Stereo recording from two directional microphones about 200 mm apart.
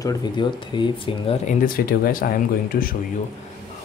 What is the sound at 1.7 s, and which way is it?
Speech, 45° left (ahead or behind).